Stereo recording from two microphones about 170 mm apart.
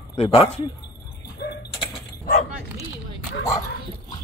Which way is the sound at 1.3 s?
75° left (ahead or behind).